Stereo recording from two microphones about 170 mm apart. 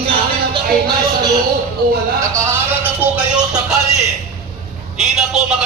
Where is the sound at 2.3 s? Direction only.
15° right (ahead or behind).